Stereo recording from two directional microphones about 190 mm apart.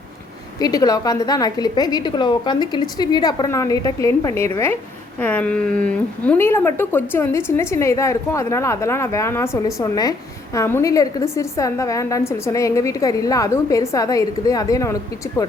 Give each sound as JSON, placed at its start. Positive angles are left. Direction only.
{"t": 0.6, "sound": "a woman's voice", "side_deg": 20}